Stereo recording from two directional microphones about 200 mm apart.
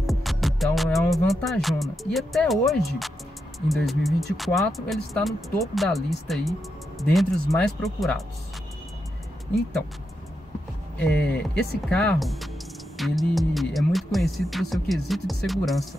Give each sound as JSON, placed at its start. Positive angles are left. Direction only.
{"t": 0.0, "sound": "music", "side_deg": 0}
{"t": 3.6, "sound": "speech", "side_deg": 0}
{"t": 11.1, "sound": "speech", "side_deg": 5}